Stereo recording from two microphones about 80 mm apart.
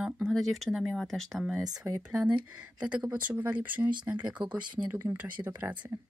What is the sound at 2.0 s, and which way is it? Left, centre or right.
Speech, centre.